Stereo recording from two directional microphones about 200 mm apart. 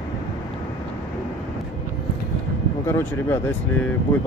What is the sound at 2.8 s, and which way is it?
Speech, 10° left (ahead or behind).